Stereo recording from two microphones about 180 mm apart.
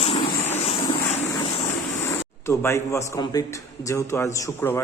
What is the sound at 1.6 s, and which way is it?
A man's voice, 15° left (ahead or behind).